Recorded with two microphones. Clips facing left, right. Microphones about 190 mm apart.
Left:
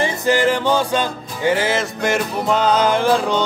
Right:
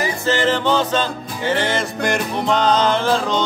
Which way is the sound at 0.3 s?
10° left (ahead or behind).